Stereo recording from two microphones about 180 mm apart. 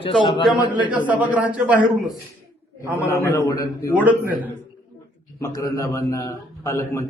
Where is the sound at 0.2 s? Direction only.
25° left (ahead or behind).